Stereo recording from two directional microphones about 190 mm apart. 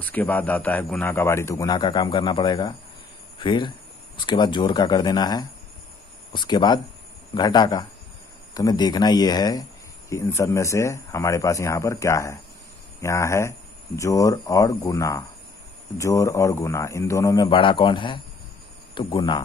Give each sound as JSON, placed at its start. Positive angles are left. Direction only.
{"t": 0.0, "sound": "speech", "side_deg": 10}